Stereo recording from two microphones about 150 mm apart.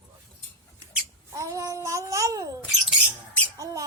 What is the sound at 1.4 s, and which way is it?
Child singing, 20° right (ahead or behind).